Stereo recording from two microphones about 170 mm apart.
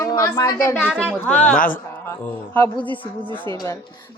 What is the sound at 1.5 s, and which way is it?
Speech, 55° left (ahead or behind).